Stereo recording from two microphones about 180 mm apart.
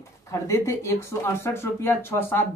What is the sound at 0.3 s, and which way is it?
Speech, 15° left (ahead or behind).